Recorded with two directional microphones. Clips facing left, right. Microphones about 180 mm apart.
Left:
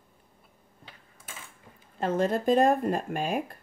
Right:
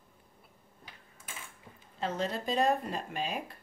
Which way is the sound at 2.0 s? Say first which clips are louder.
Left 8 dB; 50° left (ahead or behind).